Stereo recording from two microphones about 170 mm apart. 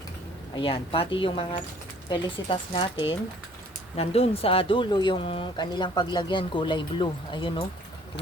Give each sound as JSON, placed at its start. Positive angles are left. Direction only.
{"t": 0.5, "sound": "a woman's voice", "side_deg": 30}
{"t": 3.9, "sound": "speech", "side_deg": 35}